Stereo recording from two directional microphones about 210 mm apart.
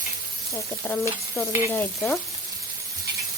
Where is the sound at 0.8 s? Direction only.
10° left (ahead or behind).